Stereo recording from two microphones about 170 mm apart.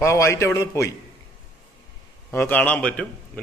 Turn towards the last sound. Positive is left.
turn(degrees=5)  # may be behind; listen again after turning